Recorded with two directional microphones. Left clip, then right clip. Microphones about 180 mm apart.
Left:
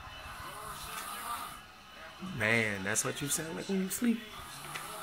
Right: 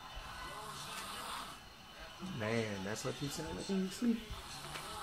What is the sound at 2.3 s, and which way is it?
A man's voice, 20° left (ahead or behind).